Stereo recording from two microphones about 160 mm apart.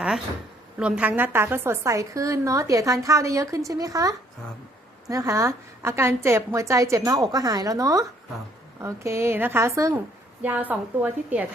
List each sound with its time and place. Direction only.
0.8 s a woman's voice: 10° right (ahead or behind)